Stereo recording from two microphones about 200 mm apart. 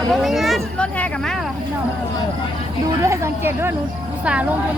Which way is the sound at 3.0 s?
15° right (ahead or behind).